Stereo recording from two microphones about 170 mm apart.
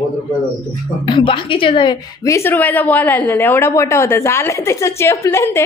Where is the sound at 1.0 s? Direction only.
30° left (ahead or behind).